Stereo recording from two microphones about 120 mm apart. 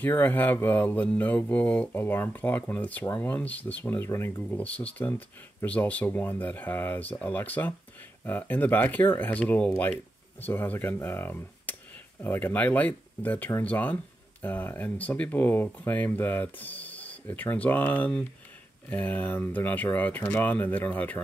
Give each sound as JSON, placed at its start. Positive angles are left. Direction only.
{"t": 0.0, "sound": "speech", "side_deg": 15}